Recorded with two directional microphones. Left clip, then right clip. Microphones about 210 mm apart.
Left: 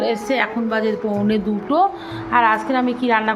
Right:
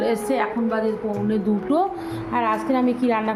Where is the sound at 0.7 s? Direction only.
10° left (ahead or behind).